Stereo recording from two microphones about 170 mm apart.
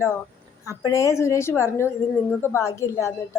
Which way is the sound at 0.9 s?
20° left (ahead or behind).